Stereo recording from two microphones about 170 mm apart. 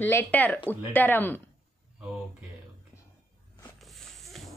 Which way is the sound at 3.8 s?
Centre (ahead or behind).